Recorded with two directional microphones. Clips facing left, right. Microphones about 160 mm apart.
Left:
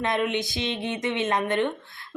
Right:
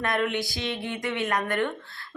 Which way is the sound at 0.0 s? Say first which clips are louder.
Left 1 dB; 20° left (ahead or behind).